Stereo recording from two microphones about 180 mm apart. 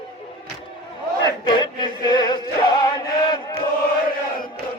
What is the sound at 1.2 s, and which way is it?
Chant, 25° left (ahead or behind).